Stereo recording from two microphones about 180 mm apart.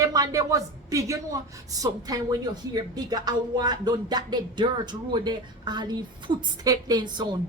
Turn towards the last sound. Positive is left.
turn(degrees=-25)  # may be behind; listen again after turning